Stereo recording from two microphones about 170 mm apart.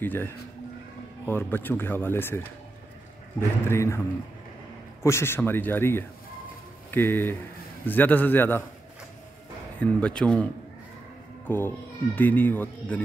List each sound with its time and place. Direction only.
0.0 s speech: 10° left (ahead or behind)
5.0 s speech: 15° left (ahead or behind)
9.8 s speech: 5° left (ahead or behind)